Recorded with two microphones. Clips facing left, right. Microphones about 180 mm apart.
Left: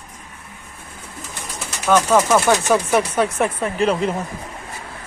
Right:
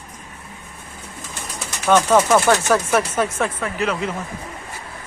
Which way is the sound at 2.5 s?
15° left (ahead or behind).